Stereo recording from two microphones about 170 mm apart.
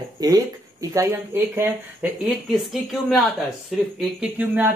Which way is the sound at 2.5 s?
Centre (ahead or behind).